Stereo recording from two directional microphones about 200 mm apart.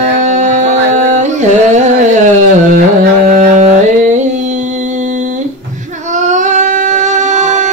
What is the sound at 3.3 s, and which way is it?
Music, 35° right (ahead or behind).